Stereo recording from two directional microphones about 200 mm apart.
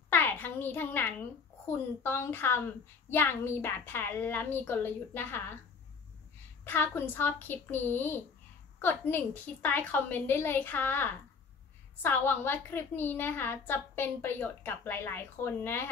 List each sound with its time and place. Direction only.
0.1 s a child's voice: 10° left (ahead or behind)
6.6 s a woman's voice: 10° left (ahead or behind)